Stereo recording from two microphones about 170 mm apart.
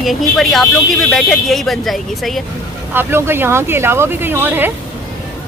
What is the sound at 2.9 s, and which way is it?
Speech, 15° right (ahead or behind).